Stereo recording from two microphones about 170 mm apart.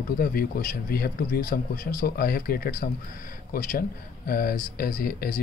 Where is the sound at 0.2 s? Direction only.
60° left (ahead or behind).